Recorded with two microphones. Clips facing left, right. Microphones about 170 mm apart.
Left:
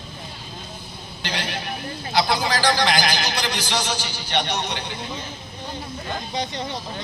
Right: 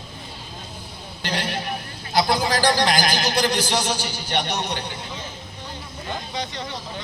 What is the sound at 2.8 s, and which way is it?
Speech, 45° right (ahead or behind).